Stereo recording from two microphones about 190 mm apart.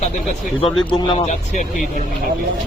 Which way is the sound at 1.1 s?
40° left (ahead or behind).